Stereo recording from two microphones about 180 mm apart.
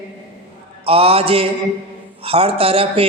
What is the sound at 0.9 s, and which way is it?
Speech, 30° right (ahead or behind).